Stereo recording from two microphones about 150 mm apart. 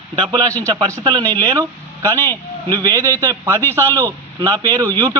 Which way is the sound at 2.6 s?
25° right (ahead or behind).